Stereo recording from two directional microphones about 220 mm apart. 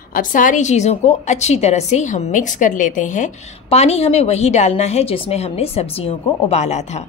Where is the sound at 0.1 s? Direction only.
40° left (ahead or behind).